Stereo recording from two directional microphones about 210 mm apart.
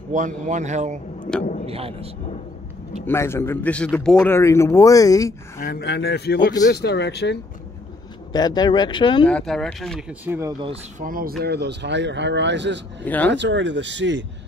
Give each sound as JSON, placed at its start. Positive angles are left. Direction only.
{"t": 0.1, "sound": "speech", "side_deg": -35}
{"t": 1.3, "sound": "speech", "side_deg": 5}
{"t": 1.7, "sound": "speech", "side_deg": -30}
{"t": 3.1, "sound": "a man's voice", "side_deg": 10}
{"t": 5.6, "sound": "speech", "side_deg": 50}
{"t": 8.3, "sound": "speech", "side_deg": 20}
{"t": 9.3, "sound": "speech", "side_deg": 0}
{"t": 10.6, "sound": "speech", "side_deg": -30}
{"t": 11.1, "sound": "speech", "side_deg": -45}
{"t": 13.0, "sound": "a man's voice", "side_deg": 5}
{"t": 13.3, "sound": "speech", "side_deg": -60}